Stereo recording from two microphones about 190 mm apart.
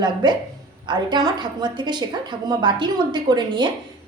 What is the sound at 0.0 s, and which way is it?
A woman's voice, 25° right (ahead or behind).